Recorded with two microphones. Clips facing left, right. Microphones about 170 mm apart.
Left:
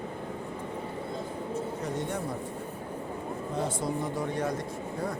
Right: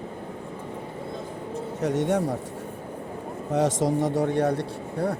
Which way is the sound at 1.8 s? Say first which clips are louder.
Right 9 dB; 80° right.